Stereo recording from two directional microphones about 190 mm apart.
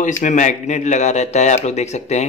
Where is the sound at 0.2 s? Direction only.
40° left (ahead or behind).